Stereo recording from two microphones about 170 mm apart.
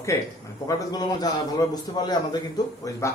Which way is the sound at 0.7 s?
20° left (ahead or behind).